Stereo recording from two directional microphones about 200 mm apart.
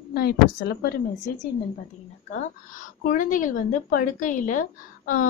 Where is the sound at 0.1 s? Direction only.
50° left (ahead or behind).